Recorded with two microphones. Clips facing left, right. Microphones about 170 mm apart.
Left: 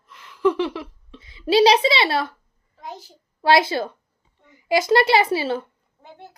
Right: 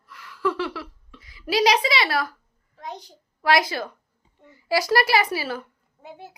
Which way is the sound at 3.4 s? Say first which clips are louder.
Left 4 dB; 30° left (ahead or behind).